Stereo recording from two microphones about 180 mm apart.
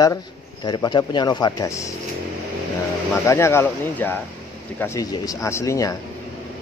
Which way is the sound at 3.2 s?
15° left (ahead or behind).